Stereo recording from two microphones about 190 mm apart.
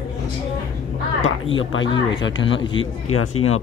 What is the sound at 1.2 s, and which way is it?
Speech, 90° left.